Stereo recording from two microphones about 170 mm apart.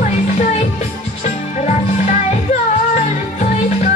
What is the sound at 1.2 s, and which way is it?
Music, 45° left (ahead or behind).